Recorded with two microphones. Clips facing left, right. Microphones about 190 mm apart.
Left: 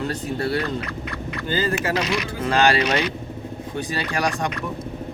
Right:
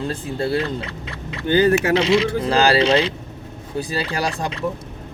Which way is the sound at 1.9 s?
25° right (ahead or behind).